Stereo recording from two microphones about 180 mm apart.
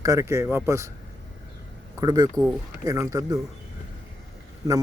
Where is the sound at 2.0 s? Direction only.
20° right (ahead or behind).